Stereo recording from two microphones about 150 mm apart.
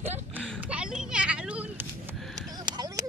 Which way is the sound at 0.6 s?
10° right (ahead or behind).